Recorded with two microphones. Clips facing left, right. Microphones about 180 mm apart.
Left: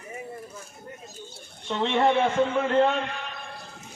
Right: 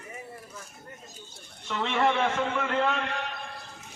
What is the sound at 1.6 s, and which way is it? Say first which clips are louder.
A man's voice: left 4 dB; 30° left (ahead or behind).